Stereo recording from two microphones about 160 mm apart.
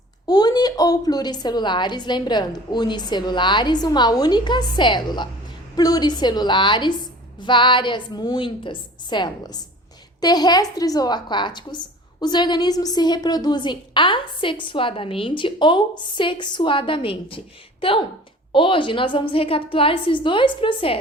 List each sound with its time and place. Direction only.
0.3 s a woman's voice: 25° left (ahead or behind)